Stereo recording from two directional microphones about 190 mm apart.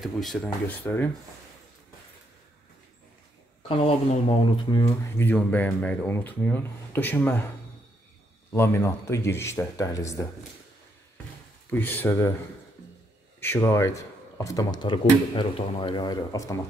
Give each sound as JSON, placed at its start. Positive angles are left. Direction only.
{"t": 0.0, "sound": "speech", "side_deg": 0}
{"t": 3.6, "sound": "speech", "side_deg": 30}
{"t": 8.5, "sound": "speech", "side_deg": 15}
{"t": 11.7, "sound": "speech", "side_deg": 10}
{"t": 13.4, "sound": "speech", "side_deg": 10}